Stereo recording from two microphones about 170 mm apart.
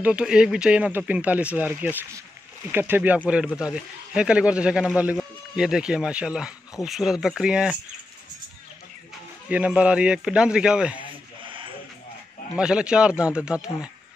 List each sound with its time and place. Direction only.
0.0 s a man's voice: 5° right (ahead or behind)
9.5 s a man's voice: 5° right (ahead or behind)
11.0 s sheep: 30° right (ahead or behind)
12.5 s a man's voice: 5° right (ahead or behind)